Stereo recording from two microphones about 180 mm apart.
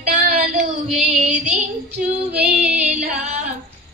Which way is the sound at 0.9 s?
45° right (ahead or behind).